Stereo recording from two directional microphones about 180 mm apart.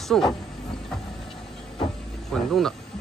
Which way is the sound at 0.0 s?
Centre (ahead or behind).